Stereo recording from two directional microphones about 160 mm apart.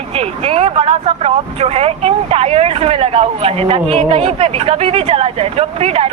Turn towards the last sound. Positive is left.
turn(degrees=-40)  # may be behind; listen again after turning